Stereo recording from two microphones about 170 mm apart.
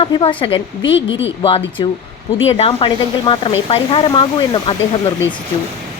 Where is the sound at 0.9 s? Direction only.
90° left.